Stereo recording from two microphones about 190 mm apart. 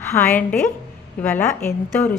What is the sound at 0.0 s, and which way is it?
A woman's voice, 10° left (ahead or behind).